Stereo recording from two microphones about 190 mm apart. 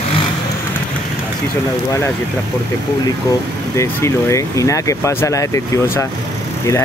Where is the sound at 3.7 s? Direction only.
15° left (ahead or behind).